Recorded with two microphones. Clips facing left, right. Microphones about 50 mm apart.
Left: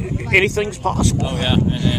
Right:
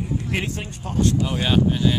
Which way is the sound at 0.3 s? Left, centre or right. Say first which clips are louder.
Left 11 dB; left.